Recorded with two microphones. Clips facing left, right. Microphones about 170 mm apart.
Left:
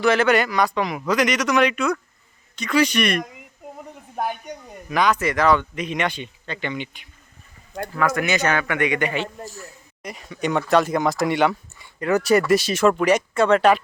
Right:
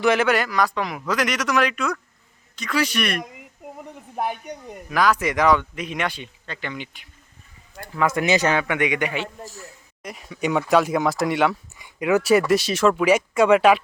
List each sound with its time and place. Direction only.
0.0 s speech: 15° right (ahead or behind)
0.3 s speech: centre (ahead or behind)
4.9 s speech: 5° right (ahead or behind)
5.2 s speech: 15° right (ahead or behind)
7.9 s a man's voice: 25° right (ahead or behind); by 13.8 s 5° right (ahead or behind)